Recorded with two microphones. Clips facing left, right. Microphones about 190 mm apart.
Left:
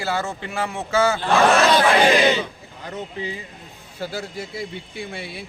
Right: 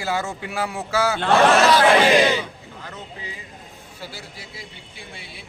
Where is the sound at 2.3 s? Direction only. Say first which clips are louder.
Left 1 dB; 20° left (ahead or behind).